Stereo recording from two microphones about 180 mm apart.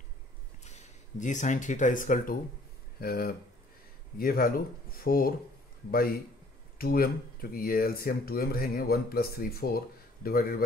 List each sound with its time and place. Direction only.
0.7 s speech: 40° left (ahead or behind)